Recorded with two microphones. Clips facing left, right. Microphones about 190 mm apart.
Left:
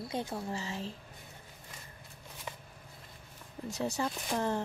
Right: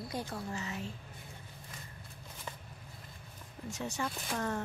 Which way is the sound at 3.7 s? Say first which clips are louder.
Left 4 dB; 35° left (ahead or behind).